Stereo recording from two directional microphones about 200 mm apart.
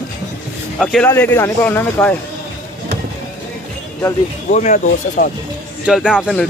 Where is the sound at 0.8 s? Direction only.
Centre (ahead or behind).